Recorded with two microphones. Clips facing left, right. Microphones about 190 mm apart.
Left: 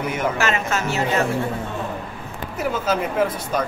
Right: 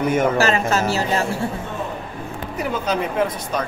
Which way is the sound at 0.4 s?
35° right (ahead or behind).